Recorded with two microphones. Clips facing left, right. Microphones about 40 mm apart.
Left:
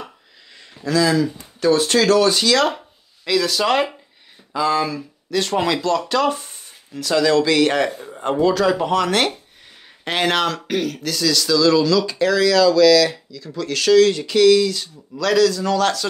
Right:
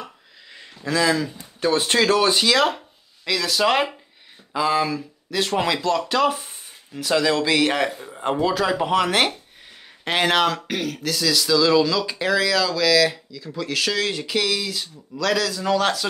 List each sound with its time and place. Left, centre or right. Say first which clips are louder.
0.8 s speech: left 3 dB; right
3.3 s speech: left 2 dB; centre